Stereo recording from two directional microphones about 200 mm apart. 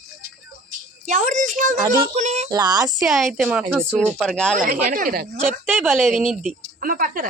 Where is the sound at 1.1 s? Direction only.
40° right (ahead or behind).